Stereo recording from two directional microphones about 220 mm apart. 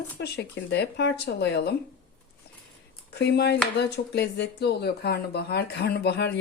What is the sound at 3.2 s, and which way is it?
Speech, 50° left (ahead or behind).